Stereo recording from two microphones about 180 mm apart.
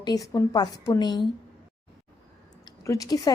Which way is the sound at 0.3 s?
20° left (ahead or behind).